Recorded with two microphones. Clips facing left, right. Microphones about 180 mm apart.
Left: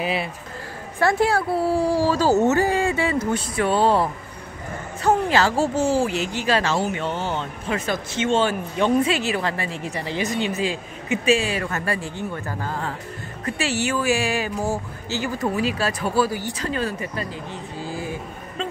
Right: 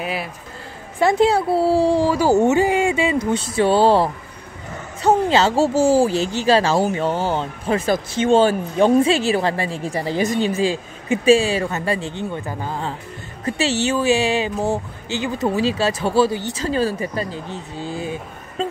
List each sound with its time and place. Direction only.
0.0 s speech: centre (ahead or behind)
0.9 s speech: 20° right (ahead or behind)